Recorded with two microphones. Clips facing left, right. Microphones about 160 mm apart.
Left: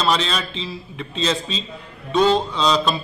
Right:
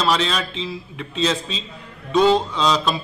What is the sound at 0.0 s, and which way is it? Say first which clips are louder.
A man's voice: even; 10° right (ahead or behind).